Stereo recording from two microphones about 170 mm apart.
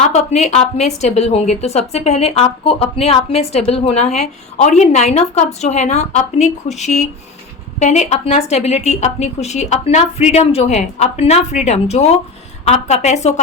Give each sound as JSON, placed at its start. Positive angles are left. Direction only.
{"t": 0.0, "sound": "a woman's voice", "side_deg": 40}